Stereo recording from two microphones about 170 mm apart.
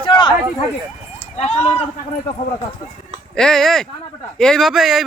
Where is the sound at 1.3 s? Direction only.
35° left (ahead or behind).